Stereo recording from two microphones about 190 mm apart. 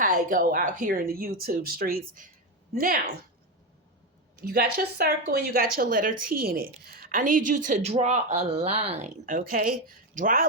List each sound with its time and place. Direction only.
0.0 s speech: 45° right (ahead or behind)
4.4 s speech: 55° right (ahead or behind)